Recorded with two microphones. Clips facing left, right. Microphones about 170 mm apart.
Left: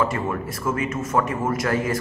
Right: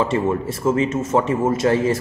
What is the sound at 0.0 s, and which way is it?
A man's voice, 25° right (ahead or behind).